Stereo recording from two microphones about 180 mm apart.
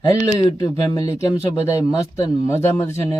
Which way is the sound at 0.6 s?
20° left (ahead or behind).